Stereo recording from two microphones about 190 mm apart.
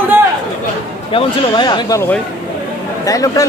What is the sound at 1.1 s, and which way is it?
A man's voice, 25° left (ahead or behind).